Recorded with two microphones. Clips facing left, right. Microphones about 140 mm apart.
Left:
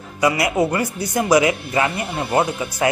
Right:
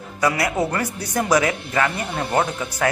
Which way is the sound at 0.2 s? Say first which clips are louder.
Left 3 dB; 15° left (ahead or behind).